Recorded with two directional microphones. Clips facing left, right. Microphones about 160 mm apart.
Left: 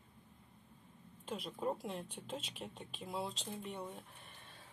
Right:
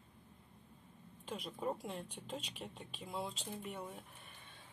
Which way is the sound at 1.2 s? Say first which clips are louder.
Left 1 dB; centre (ahead or behind).